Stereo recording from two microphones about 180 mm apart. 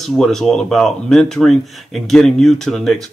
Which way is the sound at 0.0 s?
Centre (ahead or behind).